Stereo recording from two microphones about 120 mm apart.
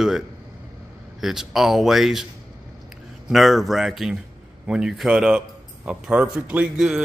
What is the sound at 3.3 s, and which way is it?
Speech, centre (ahead or behind).